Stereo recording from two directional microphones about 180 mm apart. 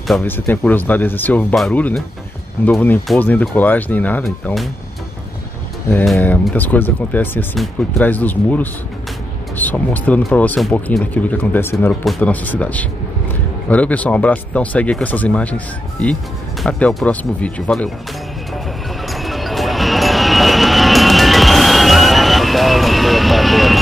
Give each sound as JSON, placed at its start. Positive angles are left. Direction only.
{"t": 0.2, "sound": "speech", "side_deg": 10}
{"t": 6.1, "sound": "speech", "side_deg": 10}
{"t": 11.9, "sound": "speech", "side_deg": 0}
{"t": 19.1, "sound": "music", "side_deg": 0}